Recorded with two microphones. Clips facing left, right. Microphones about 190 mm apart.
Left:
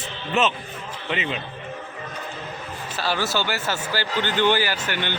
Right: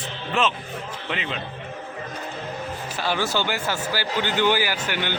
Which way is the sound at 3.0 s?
15° right (ahead or behind).